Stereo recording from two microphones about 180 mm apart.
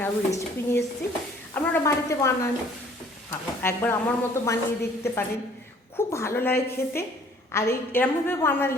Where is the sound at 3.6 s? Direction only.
10° left (ahead or behind).